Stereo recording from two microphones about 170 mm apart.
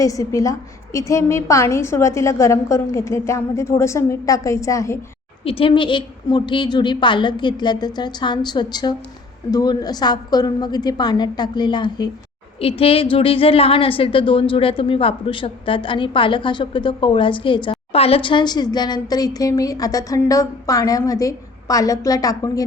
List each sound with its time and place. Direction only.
0.0 s a woman's voice: 20° left (ahead or behind)
5.5 s a woman's voice: 30° left (ahead or behind)